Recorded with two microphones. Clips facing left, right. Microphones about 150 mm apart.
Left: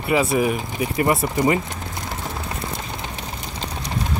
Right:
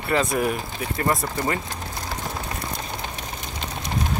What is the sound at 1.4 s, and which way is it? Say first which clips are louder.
Vehicle: left 6 dB; 20° left (ahead or behind).